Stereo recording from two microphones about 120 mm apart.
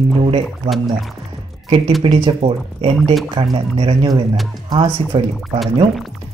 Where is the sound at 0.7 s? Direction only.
Centre (ahead or behind).